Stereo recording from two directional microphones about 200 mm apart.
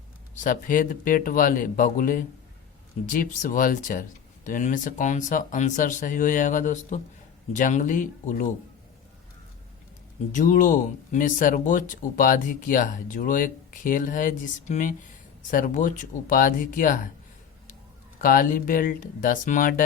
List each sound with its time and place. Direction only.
0.4 s speech: 45° left (ahead or behind)
10.3 s speech: 40° left (ahead or behind)
18.2 s speech: 45° left (ahead or behind)